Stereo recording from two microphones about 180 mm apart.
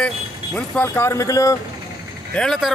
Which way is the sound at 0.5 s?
10° left (ahead or behind).